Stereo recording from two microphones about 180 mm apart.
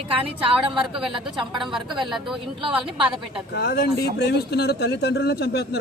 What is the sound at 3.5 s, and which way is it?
Speech, 65° left (ahead or behind).